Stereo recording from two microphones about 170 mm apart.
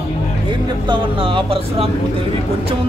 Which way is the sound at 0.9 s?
30° right (ahead or behind).